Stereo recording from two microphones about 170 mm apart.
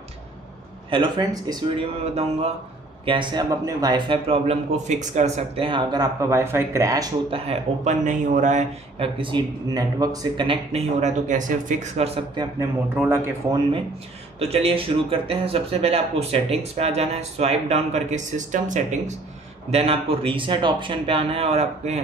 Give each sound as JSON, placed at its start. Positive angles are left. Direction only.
{"t": 0.8, "sound": "speech", "side_deg": -30}
{"t": 3.1, "sound": "a man's voice", "side_deg": -30}
{"t": 5.7, "sound": "speech", "side_deg": -25}
{"t": 7.2, "sound": "a man's voice", "side_deg": -35}
{"t": 12.9, "sound": "speech", "side_deg": -10}
{"t": 13.5, "sound": "a man's voice", "side_deg": -30}